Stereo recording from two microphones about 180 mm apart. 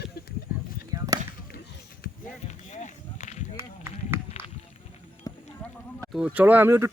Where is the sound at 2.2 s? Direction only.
45° left (ahead or behind).